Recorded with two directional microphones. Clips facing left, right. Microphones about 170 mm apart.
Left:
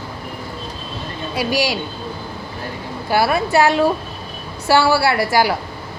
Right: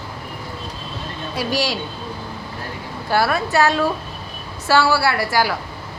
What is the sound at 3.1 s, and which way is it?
A woman's voice, 10° left (ahead or behind).